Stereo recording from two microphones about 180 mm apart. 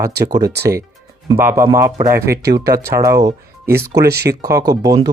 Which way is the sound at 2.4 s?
65° right (ahead or behind).